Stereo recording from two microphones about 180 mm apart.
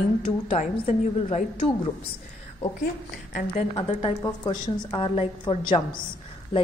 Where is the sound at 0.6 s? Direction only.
40° left (ahead or behind).